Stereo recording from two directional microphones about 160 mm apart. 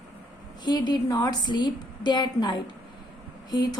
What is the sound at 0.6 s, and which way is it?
A woman's voice, 30° left (ahead or behind).